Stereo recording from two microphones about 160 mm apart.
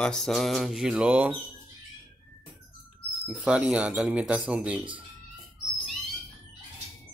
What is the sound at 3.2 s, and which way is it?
Speech, 5° right (ahead or behind).